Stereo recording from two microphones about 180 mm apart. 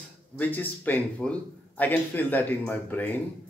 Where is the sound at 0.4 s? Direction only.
10° left (ahead or behind).